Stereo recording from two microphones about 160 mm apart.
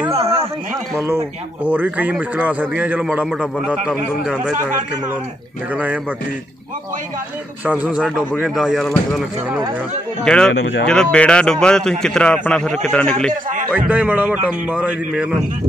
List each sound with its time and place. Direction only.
0.1 s a sound: 40° right (ahead or behind)
0.9 s speech: 15° right (ahead or behind)
7.6 s a man's voice: 10° right (ahead or behind); by 12.8 s 5° left (ahead or behind)
13.7 s speech: 10° right (ahead or behind)